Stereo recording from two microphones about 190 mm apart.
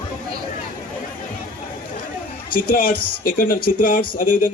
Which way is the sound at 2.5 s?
50° left (ahead or behind).